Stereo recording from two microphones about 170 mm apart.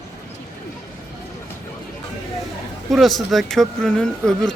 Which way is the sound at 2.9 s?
Centre (ahead or behind).